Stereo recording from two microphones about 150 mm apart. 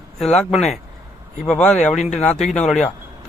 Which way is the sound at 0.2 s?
5° left (ahead or behind).